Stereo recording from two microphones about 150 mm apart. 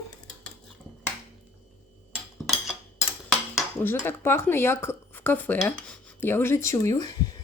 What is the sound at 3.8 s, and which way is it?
Speech, 15° left (ahead or behind).